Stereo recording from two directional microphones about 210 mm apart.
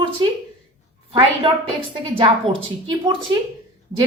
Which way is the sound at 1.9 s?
25° right (ahead or behind).